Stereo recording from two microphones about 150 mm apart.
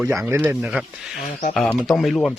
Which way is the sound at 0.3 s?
15° right (ahead or behind).